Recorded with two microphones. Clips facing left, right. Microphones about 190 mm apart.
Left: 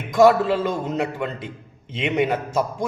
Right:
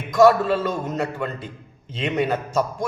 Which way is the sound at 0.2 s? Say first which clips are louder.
Even; 15° left (ahead or behind).